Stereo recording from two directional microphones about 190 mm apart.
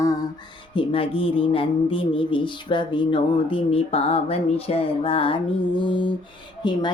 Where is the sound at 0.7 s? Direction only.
25° left (ahead or behind).